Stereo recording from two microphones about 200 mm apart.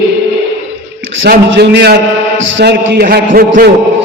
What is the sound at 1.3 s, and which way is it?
A man's voice, 55° right (ahead or behind).